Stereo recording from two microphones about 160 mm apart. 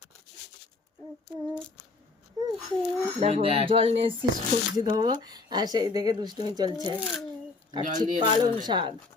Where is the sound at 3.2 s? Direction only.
40° right (ahead or behind).